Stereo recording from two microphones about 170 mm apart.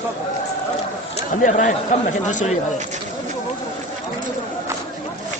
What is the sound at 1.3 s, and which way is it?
Speech, 45° left (ahead or behind).